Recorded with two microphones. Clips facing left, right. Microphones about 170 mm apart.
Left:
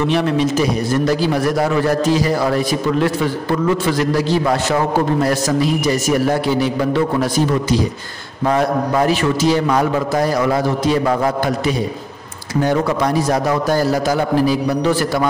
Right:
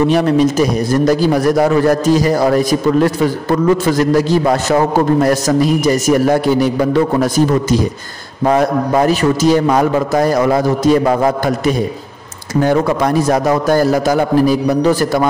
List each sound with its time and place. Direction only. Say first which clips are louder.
0.0 s a man's voice: right 5 dB; 40° right (ahead or behind)